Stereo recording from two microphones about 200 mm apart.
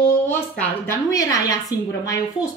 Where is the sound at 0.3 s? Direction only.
10° left (ahead or behind).